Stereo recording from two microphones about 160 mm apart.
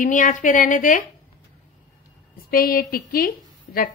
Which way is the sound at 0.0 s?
55° left (ahead or behind).